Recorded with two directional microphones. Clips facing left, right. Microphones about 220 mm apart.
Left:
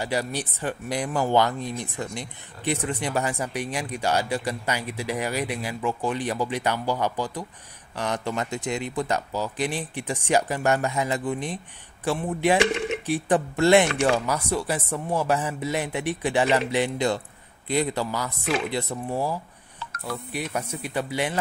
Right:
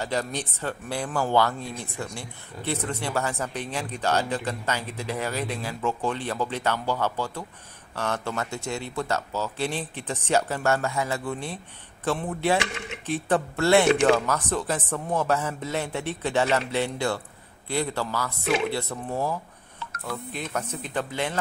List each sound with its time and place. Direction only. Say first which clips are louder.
0.0 s speech: left 1 dB; 10° left (ahead or behind)
20.3 s speech: left 3 dB; 10° left (ahead or behind)